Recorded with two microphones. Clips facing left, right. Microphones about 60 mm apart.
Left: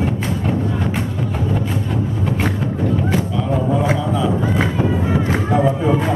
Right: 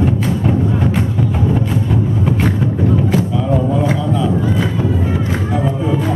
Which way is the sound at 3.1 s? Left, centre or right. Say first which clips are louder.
Right 3 dB; centre.